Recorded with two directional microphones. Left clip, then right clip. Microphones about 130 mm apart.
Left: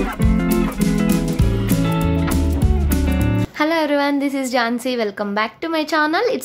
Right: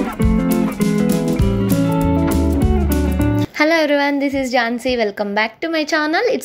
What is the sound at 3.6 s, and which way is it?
A woman's voice, 25° right (ahead or behind).